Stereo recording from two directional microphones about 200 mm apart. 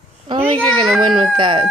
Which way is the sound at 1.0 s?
25° right (ahead or behind).